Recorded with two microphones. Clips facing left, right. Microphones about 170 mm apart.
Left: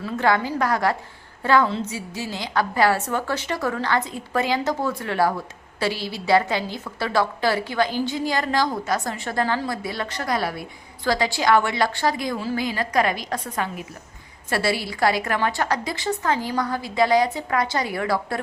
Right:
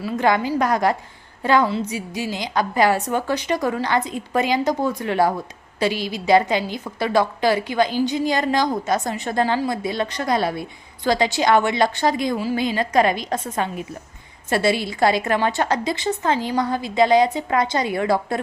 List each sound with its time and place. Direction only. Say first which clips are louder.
0.0 s a woman's voice: right 2 dB; 15° right (ahead or behind)